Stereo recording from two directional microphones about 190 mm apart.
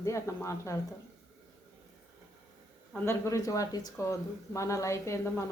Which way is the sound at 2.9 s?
15° left (ahead or behind).